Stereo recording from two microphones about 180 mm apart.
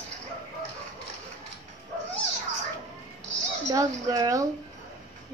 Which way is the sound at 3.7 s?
20° right (ahead or behind).